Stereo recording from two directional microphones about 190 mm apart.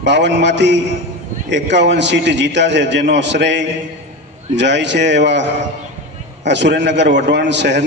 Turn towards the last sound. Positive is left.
turn(degrees=-65)  # may be behind; listen again after turning